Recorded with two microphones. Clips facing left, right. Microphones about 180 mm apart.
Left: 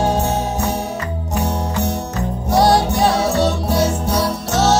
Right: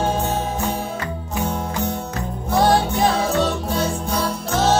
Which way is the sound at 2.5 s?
75° left (ahead or behind).